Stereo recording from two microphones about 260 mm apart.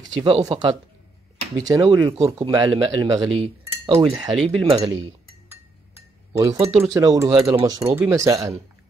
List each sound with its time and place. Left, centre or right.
0.2 s speech: centre
3.3 s cutlery: right
4.2 s speech: centre
4.6 s speech: right
6.3 s speech: centre